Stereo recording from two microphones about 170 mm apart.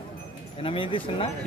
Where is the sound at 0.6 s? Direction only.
30° left (ahead or behind).